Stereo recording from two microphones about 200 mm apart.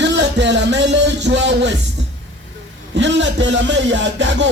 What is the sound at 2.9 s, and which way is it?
A man's voice, 65° right (ahead or behind).